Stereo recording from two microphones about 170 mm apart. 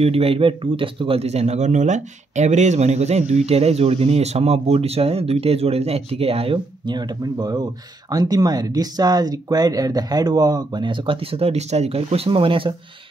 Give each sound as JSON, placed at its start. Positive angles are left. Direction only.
{"t": 0.0, "sound": "speech", "side_deg": -35}